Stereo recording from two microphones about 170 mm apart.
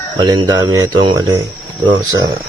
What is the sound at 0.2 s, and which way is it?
Speech, 25° right (ahead or behind).